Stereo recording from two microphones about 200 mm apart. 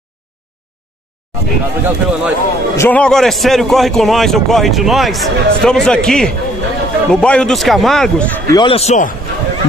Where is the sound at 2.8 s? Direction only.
5° left (ahead or behind).